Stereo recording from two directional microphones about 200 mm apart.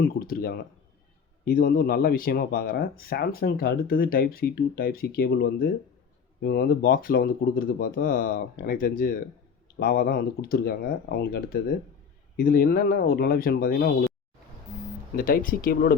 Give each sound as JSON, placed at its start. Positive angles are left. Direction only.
{"t": 0.0, "sound": "speech", "side_deg": 50}
{"t": 15.1, "sound": "speech", "side_deg": 45}